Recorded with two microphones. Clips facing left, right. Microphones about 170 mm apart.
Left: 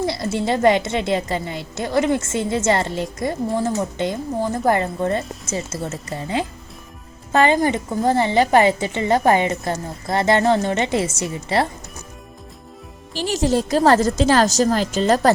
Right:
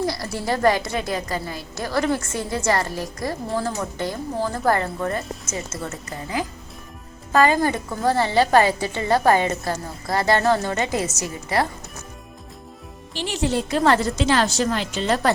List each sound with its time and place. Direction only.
0.0 s a woman's voice: 20° left (ahead or behind)
13.1 s a woman's voice: 40° left (ahead or behind)